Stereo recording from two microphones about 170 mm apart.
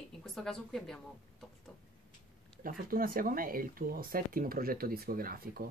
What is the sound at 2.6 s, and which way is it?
Speech, 55° right (ahead or behind).